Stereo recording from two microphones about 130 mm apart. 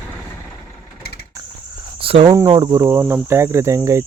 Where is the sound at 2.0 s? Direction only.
45° right (ahead or behind).